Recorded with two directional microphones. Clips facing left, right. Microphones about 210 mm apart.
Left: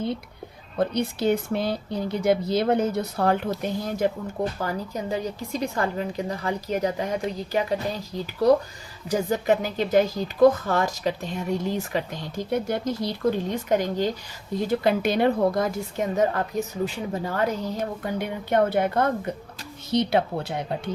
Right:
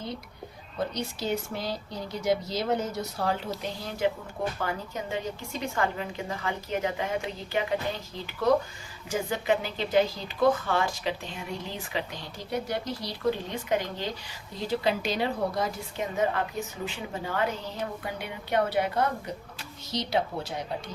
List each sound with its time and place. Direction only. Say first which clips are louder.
0.8 s speech: left 7 dB; 60° left (ahead or behind)
16.2 s speech: left 2 dB; 40° left (ahead or behind); by 20.9 s 60° left (ahead or behind)